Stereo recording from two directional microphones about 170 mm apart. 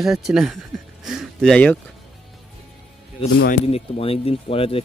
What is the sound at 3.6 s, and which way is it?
Speech, 35° left (ahead or behind).